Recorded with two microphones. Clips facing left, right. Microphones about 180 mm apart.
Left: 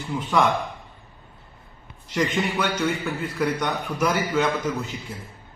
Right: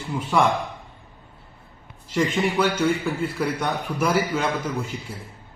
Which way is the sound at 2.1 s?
10° right (ahead or behind).